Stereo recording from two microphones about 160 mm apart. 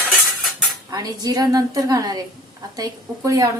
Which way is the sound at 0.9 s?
20° right (ahead or behind).